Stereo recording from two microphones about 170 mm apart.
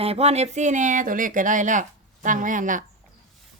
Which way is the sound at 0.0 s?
35° right (ahead or behind).